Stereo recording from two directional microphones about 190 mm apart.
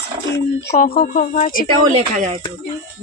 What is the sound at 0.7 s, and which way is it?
Speech, 45° left (ahead or behind).